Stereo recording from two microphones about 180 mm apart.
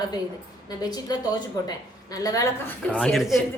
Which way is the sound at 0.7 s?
20° left (ahead or behind).